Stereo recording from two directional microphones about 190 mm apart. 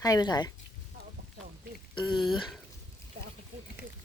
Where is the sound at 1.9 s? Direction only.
25° left (ahead or behind).